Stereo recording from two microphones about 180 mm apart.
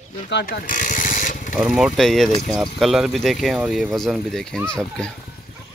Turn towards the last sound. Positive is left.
turn(degrees=5)  # may be behind; listen again after turning